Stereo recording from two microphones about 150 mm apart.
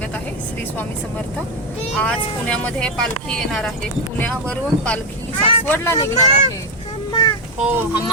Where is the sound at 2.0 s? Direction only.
10° left (ahead or behind).